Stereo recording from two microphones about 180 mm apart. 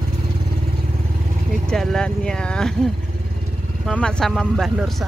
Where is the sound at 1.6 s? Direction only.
Centre (ahead or behind).